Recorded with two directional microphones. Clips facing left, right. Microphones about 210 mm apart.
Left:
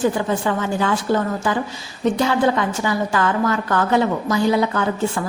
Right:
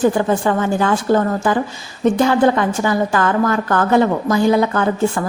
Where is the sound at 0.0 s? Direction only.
50° right (ahead or behind).